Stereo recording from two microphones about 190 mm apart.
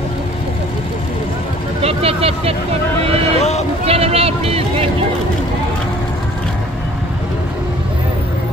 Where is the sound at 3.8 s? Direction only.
30° right (ahead or behind).